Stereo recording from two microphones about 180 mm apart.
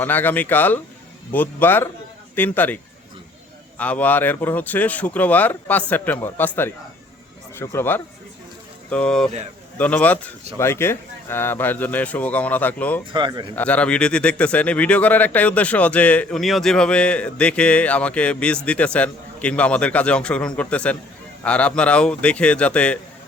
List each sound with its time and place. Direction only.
0.0 s speech: 10° left (ahead or behind)
7.6 s speech: 15° left (ahead or behind)
13.1 s a man's voice: 25° right (ahead or behind)
13.6 s speech: 5° left (ahead or behind)